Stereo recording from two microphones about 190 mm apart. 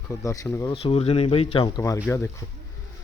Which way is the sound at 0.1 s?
15° left (ahead or behind).